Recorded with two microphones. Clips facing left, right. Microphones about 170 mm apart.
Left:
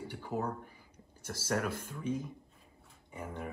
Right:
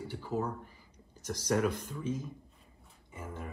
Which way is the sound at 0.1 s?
15° left (ahead or behind).